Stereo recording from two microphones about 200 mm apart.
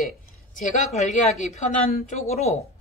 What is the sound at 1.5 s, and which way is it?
Speech, 35° left (ahead or behind).